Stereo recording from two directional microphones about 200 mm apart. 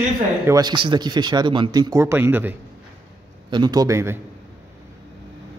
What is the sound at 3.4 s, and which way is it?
Speech, 20° right (ahead or behind).